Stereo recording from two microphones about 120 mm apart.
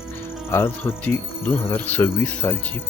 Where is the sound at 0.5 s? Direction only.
20° left (ahead or behind).